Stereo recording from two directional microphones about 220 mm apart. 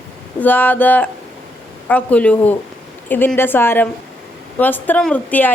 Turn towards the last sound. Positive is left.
turn(degrees=5)  # may be behind; listen again after turning